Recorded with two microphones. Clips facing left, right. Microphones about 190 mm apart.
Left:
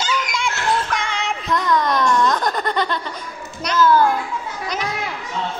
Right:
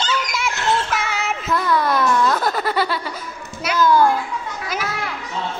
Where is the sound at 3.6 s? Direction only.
15° right (ahead or behind).